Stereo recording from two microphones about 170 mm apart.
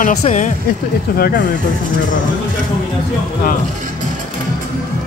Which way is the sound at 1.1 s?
60° left (ahead or behind).